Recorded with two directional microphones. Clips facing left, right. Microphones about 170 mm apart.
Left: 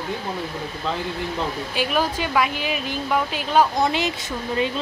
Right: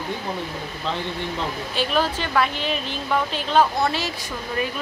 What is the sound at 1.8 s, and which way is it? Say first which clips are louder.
Speech: even; 10° left (ahead or behind).